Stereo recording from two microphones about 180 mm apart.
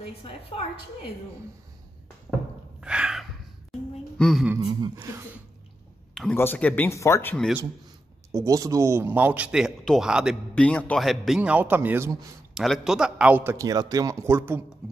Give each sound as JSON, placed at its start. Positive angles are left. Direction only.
{"t": 0.2, "sound": "a woman's voice", "side_deg": 30}
{"t": 2.8, "sound": "a sound", "side_deg": -5}
{"t": 4.6, "sound": "a sound", "side_deg": -25}
{"t": 4.9, "sound": "a man's voice", "side_deg": -15}
{"t": 6.1, "sound": "speech", "side_deg": 10}
{"t": 8.3, "sound": "a man's voice", "side_deg": -15}
{"t": 10.5, "sound": "a man's voice", "side_deg": 5}
{"t": 12.5, "sound": "a man's voice", "side_deg": 0}